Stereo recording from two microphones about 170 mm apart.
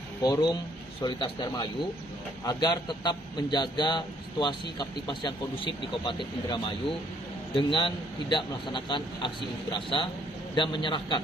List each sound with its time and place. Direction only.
0.2 s a man's voice: 25° left (ahead or behind)